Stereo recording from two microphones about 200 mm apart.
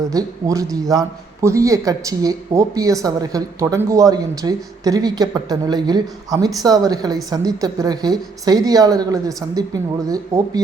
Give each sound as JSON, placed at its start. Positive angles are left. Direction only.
{"t": 0.1, "sound": "a man's voice", "side_deg": -15}